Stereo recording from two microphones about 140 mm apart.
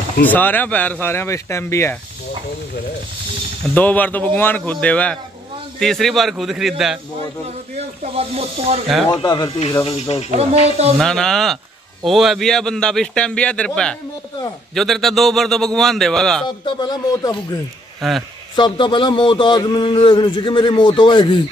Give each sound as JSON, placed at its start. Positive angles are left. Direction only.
{"t": 0.2, "sound": "speech", "side_deg": 15}
{"t": 3.7, "sound": "a man's voice", "side_deg": 10}
{"t": 7.4, "sound": "speech", "side_deg": -50}
{"t": 9.1, "sound": "speech", "side_deg": 30}
{"t": 9.8, "sound": "speech", "side_deg": 45}
{"t": 10.3, "sound": "speech", "side_deg": -50}
{"t": 11.0, "sound": "a man's voice", "side_deg": 5}
{"t": 16.4, "sound": "a sound", "side_deg": 30}
{"t": 18.0, "sound": "a man's voice", "side_deg": 0}
{"t": 18.6, "sound": "speech", "side_deg": 35}